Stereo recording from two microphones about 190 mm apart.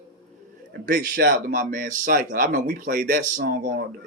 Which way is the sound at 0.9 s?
45° right (ahead or behind).